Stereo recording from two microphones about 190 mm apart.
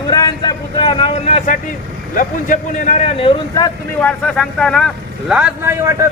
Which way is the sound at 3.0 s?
25° left (ahead or behind).